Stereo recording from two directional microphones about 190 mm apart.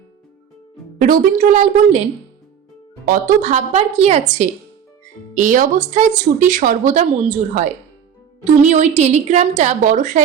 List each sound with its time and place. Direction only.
0.9 s a woman's voice: 45° right (ahead or behind)
3.1 s a woman's voice: 40° right (ahead or behind)